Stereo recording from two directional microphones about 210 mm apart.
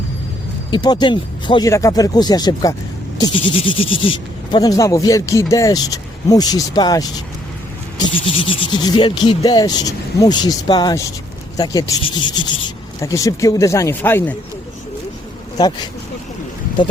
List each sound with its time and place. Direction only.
0.7 s speech: 20° left (ahead or behind)
8.4 s speech: 25° left (ahead or behind)
15.5 s speech: 20° left (ahead or behind)